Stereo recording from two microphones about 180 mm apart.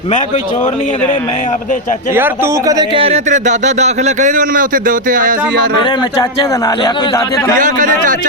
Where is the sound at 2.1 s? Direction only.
15° right (ahead or behind); by 5.4 s 50° right (ahead or behind).